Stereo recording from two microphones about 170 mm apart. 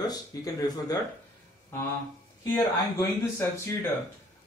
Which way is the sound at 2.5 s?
20° left (ahead or behind).